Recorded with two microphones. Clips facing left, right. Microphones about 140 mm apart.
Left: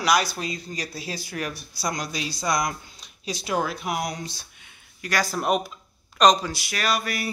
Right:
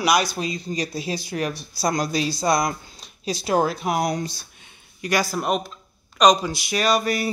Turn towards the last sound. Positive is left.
turn(degrees=-25)  # may be behind; listen again after turning